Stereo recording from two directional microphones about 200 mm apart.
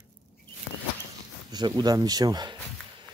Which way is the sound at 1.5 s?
20° right (ahead or behind).